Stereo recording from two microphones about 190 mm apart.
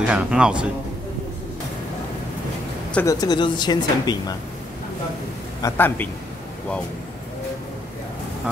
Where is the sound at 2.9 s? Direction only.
20° left (ahead or behind).